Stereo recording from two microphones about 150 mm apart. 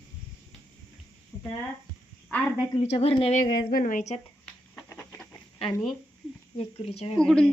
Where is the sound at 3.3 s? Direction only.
80° left; by 4.2 s 55° left (ahead or behind).